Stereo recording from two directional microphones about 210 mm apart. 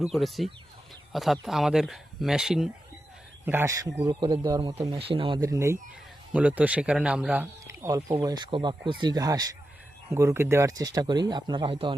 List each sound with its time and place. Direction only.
0.1 s speech: centre (ahead or behind); by 11.9 s 25° right (ahead or behind)